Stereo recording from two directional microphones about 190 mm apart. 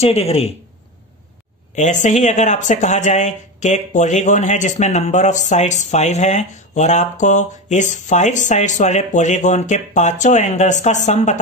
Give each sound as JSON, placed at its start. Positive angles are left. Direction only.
{"t": 0.0, "sound": "speech", "side_deg": 30}
{"t": 1.8, "sound": "speech", "side_deg": 40}